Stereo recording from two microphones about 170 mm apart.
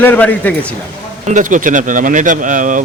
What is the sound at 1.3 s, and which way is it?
Speech, 45° right (ahead or behind).